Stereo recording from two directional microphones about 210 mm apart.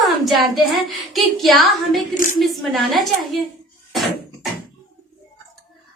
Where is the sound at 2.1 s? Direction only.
35° left (ahead or behind).